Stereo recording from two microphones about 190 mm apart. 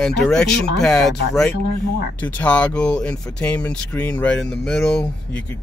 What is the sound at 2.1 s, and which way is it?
Speech, 10° left (ahead or behind).